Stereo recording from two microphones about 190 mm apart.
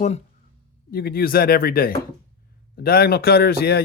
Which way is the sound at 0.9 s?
50° left (ahead or behind).